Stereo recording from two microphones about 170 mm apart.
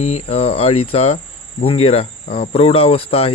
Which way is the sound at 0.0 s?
40° left (ahead or behind).